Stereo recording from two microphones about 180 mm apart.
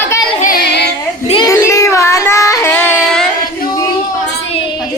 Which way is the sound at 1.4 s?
15° left (ahead or behind).